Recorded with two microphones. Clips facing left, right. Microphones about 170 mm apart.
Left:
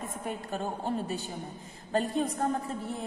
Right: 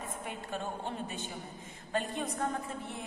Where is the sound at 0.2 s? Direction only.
40° left (ahead or behind).